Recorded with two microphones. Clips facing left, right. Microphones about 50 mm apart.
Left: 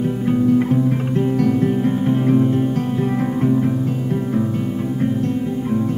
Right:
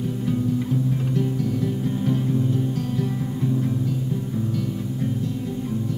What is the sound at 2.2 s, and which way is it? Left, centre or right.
Music, left.